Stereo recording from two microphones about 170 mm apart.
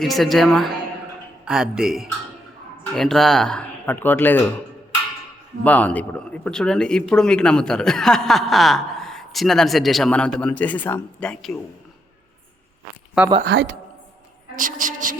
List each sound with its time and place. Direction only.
0.0 s speech: centre (ahead or behind)
5.6 s a man's voice: 10° left (ahead or behind)
13.4 s speech: 90° right
14.5 s a woman's voice: 50° right (ahead or behind)